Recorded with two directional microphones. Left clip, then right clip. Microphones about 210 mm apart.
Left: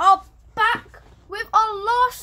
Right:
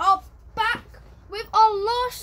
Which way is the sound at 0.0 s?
Centre (ahead or behind).